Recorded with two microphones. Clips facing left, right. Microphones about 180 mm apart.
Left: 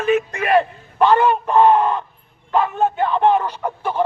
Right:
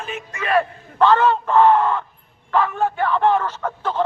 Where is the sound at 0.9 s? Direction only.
15° left (ahead or behind).